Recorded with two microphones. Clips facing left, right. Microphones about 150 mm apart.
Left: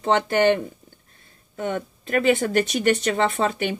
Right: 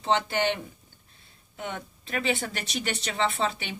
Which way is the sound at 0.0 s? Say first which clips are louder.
Left 7 dB; 50° left (ahead or behind).